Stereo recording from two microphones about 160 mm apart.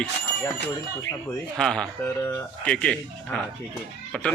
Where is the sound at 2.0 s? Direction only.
15° left (ahead or behind).